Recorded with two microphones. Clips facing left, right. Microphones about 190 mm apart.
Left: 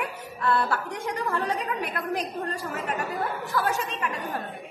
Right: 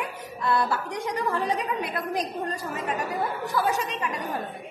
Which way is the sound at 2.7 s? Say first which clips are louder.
Right 1 dB; 15° right (ahead or behind).